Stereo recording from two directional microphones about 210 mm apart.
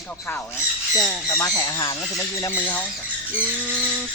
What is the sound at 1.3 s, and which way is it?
Speech, 15° left (ahead or behind).